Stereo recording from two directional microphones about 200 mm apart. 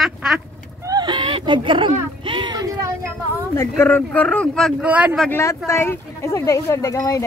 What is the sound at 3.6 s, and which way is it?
Speech, 10° left (ahead or behind).